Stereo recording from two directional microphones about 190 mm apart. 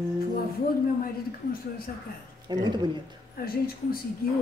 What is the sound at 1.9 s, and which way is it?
Speech, 45° left (ahead or behind).